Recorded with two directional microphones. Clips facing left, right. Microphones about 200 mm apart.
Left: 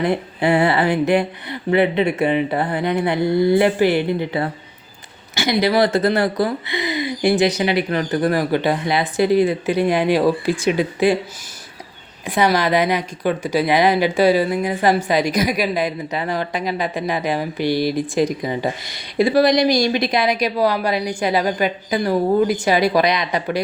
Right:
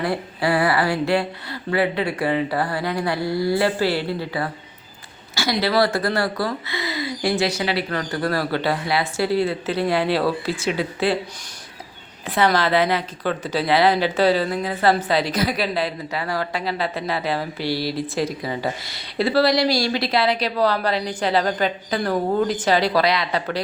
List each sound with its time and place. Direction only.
0.0 s speech: 20° left (ahead or behind)
12.2 s speech: 15° left (ahead or behind)